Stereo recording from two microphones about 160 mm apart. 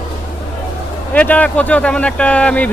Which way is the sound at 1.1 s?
10° left (ahead or behind).